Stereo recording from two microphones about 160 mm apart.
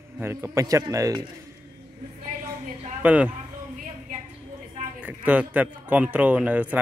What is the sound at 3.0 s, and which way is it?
Speech, 10° right (ahead or behind).